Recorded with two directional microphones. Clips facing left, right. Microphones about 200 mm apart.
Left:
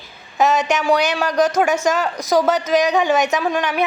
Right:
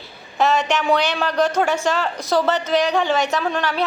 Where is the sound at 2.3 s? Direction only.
10° left (ahead or behind).